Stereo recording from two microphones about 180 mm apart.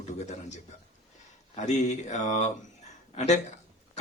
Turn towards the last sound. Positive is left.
turn(degrees=35)  # may be behind; listen again after turning